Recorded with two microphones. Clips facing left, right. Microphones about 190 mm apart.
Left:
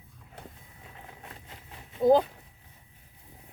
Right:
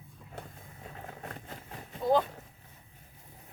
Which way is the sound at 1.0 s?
45° right (ahead or behind).